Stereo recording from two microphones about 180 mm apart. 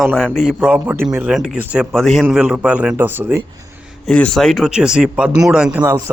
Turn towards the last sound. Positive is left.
turn(degrees=-20)  # may be behind; listen again after turning